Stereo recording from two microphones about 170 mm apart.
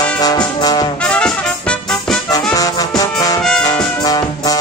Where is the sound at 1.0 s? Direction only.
5° left (ahead or behind).